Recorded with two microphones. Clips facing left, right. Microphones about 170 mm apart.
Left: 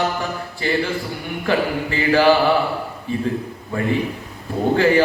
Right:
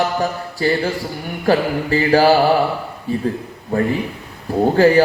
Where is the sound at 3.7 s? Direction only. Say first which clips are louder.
Right 5 dB; 40° right (ahead or behind).